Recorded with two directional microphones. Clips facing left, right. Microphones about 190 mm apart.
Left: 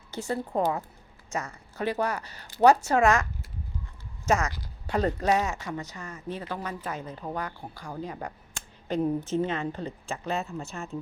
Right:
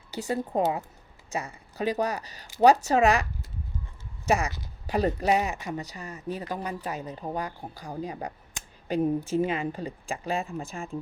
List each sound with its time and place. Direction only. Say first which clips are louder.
0.2 s speech: right 1 dB; 20° right (ahead or behind)
4.3 s speech: even; 15° right (ahead or behind)